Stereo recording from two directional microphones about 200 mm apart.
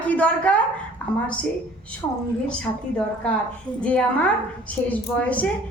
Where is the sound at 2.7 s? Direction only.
25° left (ahead or behind).